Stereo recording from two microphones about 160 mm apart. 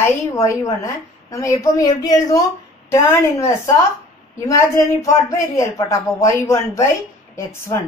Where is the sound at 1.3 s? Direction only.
20° left (ahead or behind).